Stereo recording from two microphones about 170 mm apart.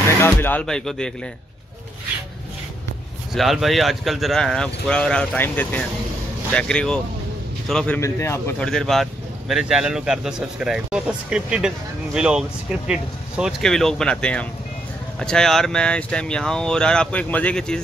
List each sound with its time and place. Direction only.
0.2 s speech: 10° left (ahead or behind)
3.3 s a man's voice: centre (ahead or behind); by 8.6 s 15° left (ahead or behind)
8.6 s speech: centre (ahead or behind)